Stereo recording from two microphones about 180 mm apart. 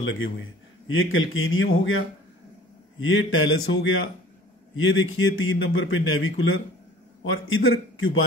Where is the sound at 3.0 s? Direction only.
90° left.